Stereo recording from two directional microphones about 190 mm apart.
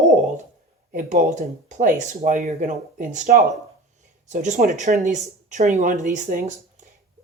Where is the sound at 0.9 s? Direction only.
40° right (ahead or behind).